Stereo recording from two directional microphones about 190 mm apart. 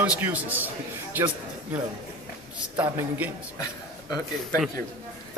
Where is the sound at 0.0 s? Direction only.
10° right (ahead or behind).